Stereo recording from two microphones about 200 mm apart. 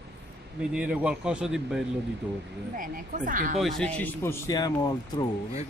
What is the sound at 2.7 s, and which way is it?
Speech, 45° right (ahead or behind).